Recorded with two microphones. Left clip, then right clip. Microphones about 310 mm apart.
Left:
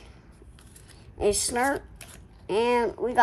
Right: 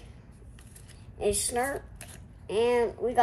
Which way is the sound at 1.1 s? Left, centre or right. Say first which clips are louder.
Left 4 dB; left.